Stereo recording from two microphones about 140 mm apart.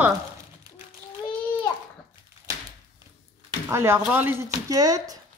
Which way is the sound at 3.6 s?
15° right (ahead or behind).